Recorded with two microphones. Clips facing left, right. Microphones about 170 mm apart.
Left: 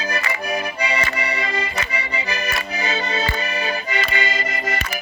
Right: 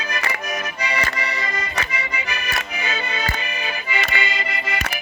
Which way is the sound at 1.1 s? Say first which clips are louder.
Left 3 dB; 30° left (ahead or behind).